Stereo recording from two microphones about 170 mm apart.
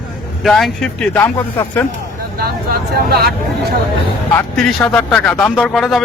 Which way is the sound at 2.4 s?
65° right (ahead or behind).